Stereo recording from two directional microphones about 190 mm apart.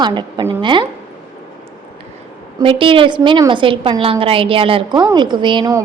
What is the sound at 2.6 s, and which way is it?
A woman's voice, 30° right (ahead or behind).